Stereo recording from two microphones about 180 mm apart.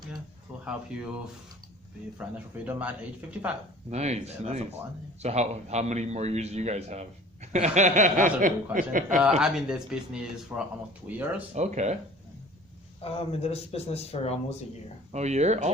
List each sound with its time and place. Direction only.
0.9 s speech: 5° right (ahead or behind)
2.6 s speech: 10° right (ahead or behind)
3.8 s a man's voice: 35° right (ahead or behind)
7.5 s chuckle: 40° right (ahead or behind)
9.4 s speech: 5° right (ahead or behind)
11.5 s a man's voice: 40° right (ahead or behind)
13.0 s speech: 35° left (ahead or behind)
15.1 s a man's voice: 40° right (ahead or behind)